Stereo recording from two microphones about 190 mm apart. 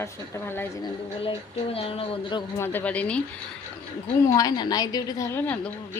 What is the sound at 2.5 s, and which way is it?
Speech, 10° left (ahead or behind).